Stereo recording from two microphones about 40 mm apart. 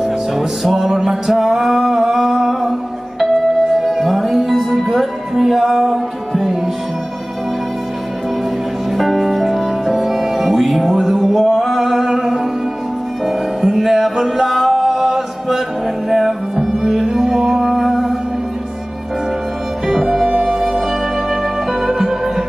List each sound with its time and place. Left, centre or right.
0.0 s music: centre
3.8 s music: centre
8.9 s music: centre
19.9 s music: centre
20.2 s music: right
20.5 s music: centre
21.8 s music: centre